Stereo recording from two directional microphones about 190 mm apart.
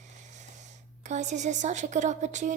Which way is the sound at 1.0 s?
40° right (ahead or behind).